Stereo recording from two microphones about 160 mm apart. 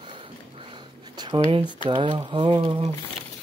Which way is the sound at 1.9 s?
30° right (ahead or behind).